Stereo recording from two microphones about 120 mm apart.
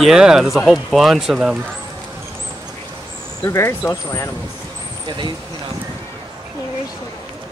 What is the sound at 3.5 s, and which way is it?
Speech, 25° left (ahead or behind).